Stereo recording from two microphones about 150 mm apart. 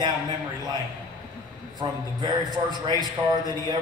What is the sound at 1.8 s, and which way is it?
A man's voice, 30° right (ahead or behind).